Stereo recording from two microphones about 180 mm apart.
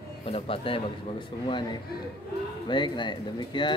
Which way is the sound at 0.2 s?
30° left (ahead or behind).